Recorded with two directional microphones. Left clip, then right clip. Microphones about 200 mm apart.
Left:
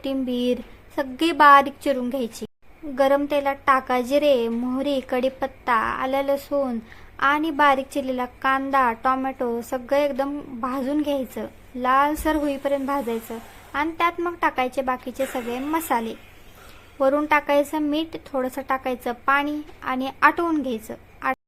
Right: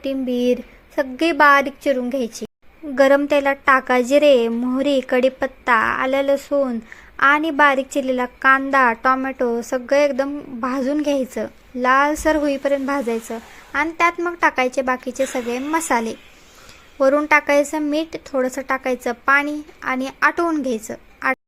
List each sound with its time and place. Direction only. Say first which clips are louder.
0.0 s a woman's voice: right 4 dB; 10° right (ahead or behind)